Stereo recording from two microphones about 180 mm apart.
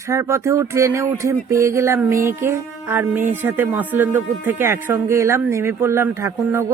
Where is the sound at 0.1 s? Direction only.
15° right (ahead or behind).